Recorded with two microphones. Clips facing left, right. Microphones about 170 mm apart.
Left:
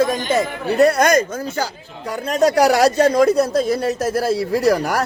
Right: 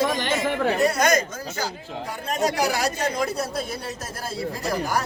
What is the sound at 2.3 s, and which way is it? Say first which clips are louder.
Speech: left 9 dB; 80° left.